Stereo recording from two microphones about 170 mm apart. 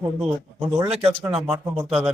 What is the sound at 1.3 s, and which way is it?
Speech, 10° right (ahead or behind).